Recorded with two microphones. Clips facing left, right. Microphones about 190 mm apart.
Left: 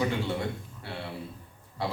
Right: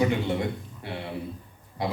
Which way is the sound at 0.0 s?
20° right (ahead or behind).